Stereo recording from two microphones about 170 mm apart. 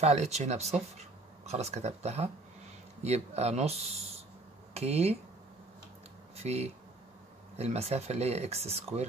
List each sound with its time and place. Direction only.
0.0 s speech: 40° right (ahead or behind)
6.3 s speech: 40° right (ahead or behind)